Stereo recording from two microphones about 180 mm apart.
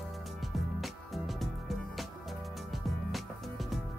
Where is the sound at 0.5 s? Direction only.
Centre (ahead or behind).